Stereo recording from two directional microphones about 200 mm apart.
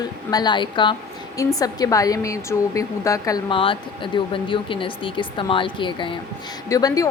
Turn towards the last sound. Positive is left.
turn(degrees=15)  # may be behind; listen again after turning